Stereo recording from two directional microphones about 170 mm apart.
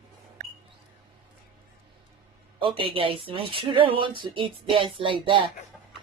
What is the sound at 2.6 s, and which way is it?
Speech, 30° right (ahead or behind).